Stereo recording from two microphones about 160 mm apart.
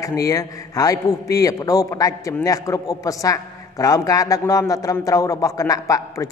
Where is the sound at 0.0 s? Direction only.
20° left (ahead or behind).